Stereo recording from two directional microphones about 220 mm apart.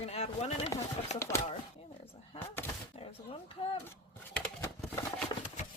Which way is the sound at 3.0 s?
25° left (ahead or behind).